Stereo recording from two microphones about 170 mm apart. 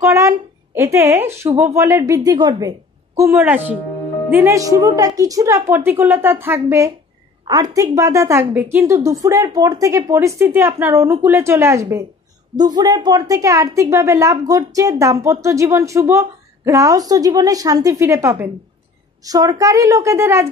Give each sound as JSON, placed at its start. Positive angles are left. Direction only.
{"t": 0.0, "sound": "a woman's voice", "side_deg": -20}